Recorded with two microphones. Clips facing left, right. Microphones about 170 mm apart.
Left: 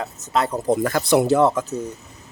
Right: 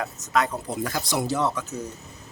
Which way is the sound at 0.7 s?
55° left (ahead or behind).